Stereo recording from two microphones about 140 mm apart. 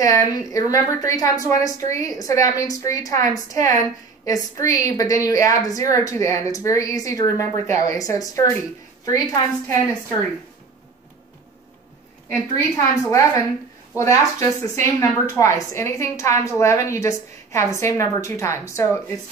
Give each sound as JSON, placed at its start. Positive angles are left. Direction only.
{"t": 0.0, "sound": "a woman's voice", "side_deg": 25}
{"t": 12.3, "sound": "a woman's voice", "side_deg": 20}